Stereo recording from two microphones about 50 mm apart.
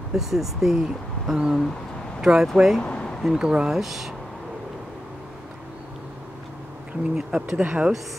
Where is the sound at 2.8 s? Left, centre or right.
Left.